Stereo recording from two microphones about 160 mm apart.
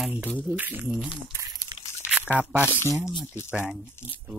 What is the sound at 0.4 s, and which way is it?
Speech, 10° right (ahead or behind).